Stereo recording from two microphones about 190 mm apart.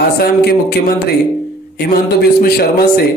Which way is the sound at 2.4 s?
55° left (ahead or behind).